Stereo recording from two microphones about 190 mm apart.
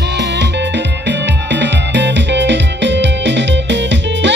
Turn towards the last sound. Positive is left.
turn(degrees=-70)  # may be behind; listen again after turning